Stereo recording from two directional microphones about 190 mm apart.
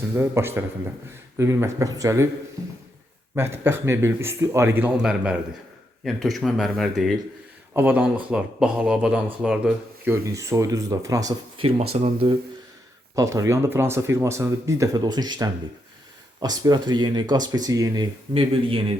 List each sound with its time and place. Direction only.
0.2 s speech: 15° right (ahead or behind)
3.3 s speech: 15° right (ahead or behind)
11.6 s speech: 30° right (ahead or behind)
13.1 s speech: 15° right (ahead or behind)